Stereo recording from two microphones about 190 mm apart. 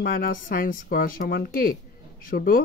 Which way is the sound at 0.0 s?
50° left (ahead or behind).